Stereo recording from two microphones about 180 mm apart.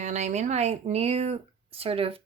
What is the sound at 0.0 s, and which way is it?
A woman's voice, 40° right (ahead or behind).